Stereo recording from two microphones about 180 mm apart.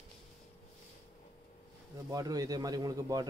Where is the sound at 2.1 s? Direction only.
20° right (ahead or behind).